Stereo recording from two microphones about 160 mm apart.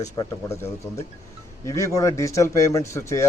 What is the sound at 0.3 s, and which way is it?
A man's voice, 15° left (ahead or behind).